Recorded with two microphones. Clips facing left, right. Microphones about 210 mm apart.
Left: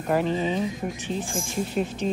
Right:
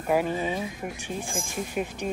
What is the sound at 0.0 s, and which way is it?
Speech, 10° right (ahead or behind).